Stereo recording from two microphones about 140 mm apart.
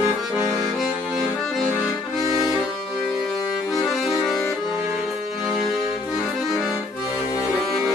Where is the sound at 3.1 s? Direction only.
Centre (ahead or behind).